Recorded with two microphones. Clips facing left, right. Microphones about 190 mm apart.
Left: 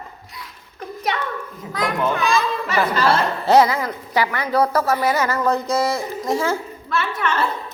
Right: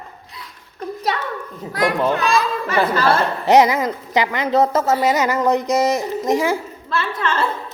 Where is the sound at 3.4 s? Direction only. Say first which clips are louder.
Right 2 dB; 20° right (ahead or behind).